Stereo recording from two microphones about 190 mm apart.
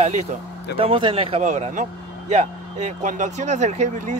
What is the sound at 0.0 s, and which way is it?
A man's voice, 35° right (ahead or behind).